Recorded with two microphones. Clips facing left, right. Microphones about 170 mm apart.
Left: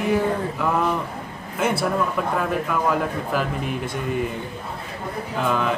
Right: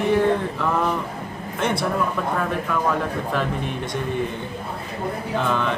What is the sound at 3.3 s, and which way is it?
Speech, 5° left (ahead or behind).